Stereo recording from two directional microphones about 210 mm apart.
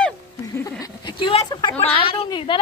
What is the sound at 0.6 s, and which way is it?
Speech, 15° left (ahead or behind).